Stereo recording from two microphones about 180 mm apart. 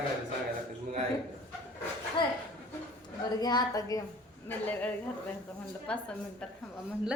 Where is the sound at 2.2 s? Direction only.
25° left (ahead or behind).